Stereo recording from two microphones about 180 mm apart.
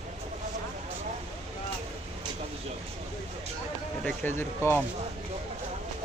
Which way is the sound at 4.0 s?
10° left (ahead or behind).